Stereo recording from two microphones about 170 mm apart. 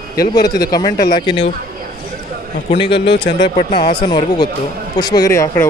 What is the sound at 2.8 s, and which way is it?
A man's voice, 30° left (ahead or behind).